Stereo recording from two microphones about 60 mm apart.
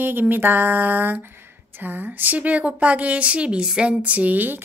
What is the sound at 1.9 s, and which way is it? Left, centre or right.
A woman's voice, right.